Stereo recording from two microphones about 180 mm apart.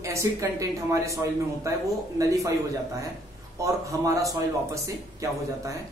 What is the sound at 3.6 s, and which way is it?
Speech, 15° right (ahead or behind).